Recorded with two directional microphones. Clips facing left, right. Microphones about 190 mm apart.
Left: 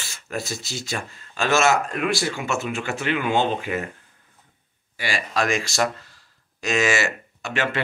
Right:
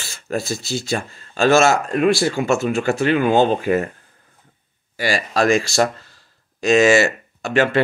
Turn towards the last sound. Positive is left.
turn(degrees=-35)  # may be behind; listen again after turning